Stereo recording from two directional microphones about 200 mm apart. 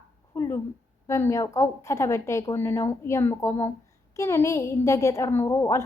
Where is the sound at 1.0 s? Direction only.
15° left (ahead or behind).